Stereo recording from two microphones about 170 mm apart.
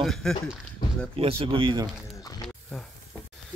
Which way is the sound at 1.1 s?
30° right (ahead or behind).